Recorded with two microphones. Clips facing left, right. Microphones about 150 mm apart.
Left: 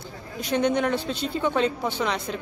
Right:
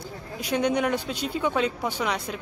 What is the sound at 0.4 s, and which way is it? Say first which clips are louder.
Speech: left 1 dB; 10° right (ahead or behind).